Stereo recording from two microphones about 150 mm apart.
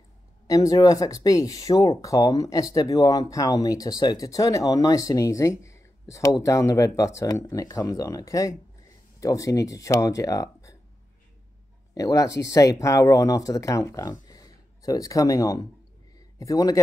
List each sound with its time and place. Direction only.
0.5 s speech: 25° left (ahead or behind)
11.9 s speech: 25° left (ahead or behind)
14.2 s a sound: 25° left (ahead or behind)
16.3 s speech: 25° left (ahead or behind)